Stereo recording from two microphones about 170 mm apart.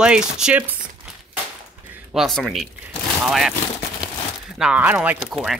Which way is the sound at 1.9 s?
5° right (ahead or behind).